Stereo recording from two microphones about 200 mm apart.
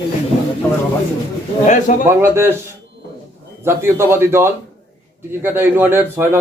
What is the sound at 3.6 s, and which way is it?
Speech, 10° right (ahead or behind).